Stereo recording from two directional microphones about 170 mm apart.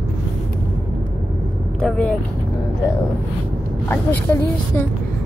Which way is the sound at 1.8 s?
5° left (ahead or behind).